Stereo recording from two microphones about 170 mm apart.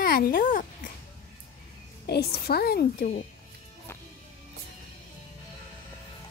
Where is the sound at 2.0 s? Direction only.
70° left (ahead or behind).